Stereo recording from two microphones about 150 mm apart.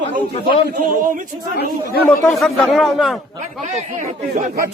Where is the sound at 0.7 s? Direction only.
65° right (ahead or behind).